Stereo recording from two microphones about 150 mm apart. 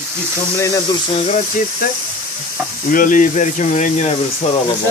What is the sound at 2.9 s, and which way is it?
Speech, 65° left (ahead or behind).